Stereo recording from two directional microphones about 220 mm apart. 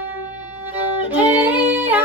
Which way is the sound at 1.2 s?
10° right (ahead or behind).